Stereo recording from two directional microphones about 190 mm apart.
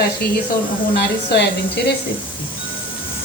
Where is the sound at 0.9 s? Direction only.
60° left (ahead or behind).